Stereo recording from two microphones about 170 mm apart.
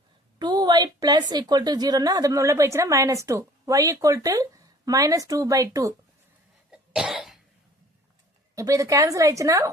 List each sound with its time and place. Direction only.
0.3 s a woman's voice: 25° right (ahead or behind)
6.7 s cough: 5° right (ahead or behind)
8.5 s a woman's voice: 20° right (ahead or behind)